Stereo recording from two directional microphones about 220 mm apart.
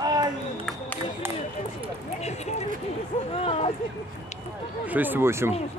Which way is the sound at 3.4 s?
30° left (ahead or behind).